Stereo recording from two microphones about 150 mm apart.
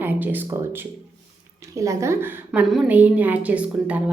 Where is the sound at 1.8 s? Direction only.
20° right (ahead or behind).